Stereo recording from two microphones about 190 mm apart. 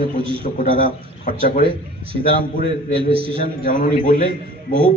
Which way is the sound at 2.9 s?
30° right (ahead or behind).